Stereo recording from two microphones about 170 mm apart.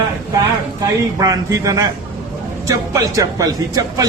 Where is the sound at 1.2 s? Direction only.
20° right (ahead or behind).